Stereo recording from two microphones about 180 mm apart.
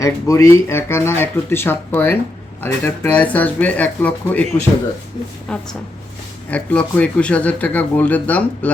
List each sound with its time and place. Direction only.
0.0 s speech: 15° left (ahead or behind)
5.5 s a woman's voice: 5° left (ahead or behind)